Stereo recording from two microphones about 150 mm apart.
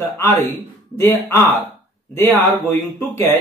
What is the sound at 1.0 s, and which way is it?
Speech, 15° left (ahead or behind).